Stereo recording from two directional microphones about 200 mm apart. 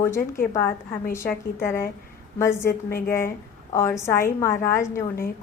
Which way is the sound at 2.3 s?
15° left (ahead or behind).